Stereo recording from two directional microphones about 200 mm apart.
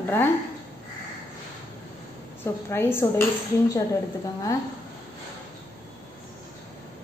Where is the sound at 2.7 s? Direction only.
10° left (ahead or behind).